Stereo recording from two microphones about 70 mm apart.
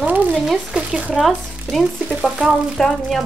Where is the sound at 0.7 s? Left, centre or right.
Centre.